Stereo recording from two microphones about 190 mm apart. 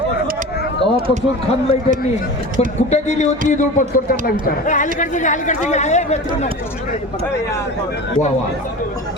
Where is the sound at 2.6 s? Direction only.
35° left (ahead or behind).